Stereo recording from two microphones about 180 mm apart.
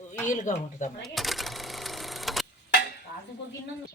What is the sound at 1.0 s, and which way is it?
Sewing machine, centre (ahead or behind).